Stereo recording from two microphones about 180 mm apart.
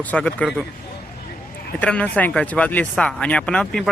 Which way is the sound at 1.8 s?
5° left (ahead or behind).